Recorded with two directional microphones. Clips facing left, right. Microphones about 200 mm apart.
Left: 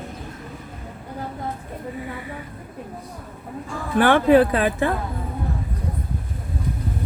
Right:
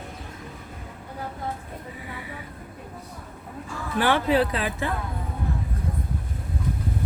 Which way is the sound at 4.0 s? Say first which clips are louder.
Left 7 dB; 55° left (ahead or behind).